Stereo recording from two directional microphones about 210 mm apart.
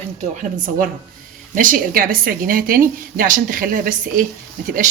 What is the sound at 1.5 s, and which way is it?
A woman's voice, 40° right (ahead or behind).